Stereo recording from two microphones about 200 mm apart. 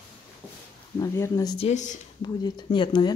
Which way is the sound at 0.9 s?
15° left (ahead or behind).